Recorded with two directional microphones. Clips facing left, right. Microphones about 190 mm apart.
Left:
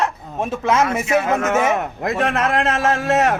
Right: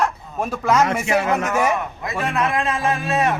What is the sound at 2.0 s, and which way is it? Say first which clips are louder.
A man's voice: left 3 dB; 80° left.